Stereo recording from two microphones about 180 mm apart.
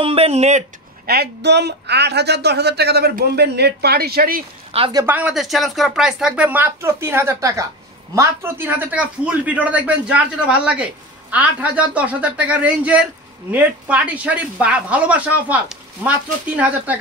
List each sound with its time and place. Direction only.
0.0 s speech: 35° right (ahead or behind)
1.0 s speech: 60° right (ahead or behind)
4.9 s a man's voice: 10° right (ahead or behind)